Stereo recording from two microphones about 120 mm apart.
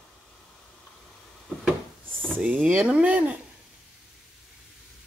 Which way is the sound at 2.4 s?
10° right (ahead or behind).